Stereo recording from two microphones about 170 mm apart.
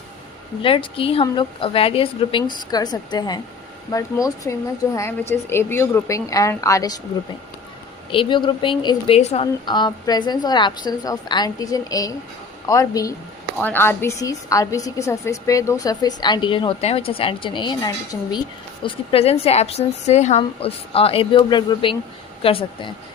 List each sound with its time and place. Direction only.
0.6 s a woman's voice: 30° left (ahead or behind)
8.1 s a woman's voice: 30° left (ahead or behind)
18.8 s a woman's voice: 30° left (ahead or behind)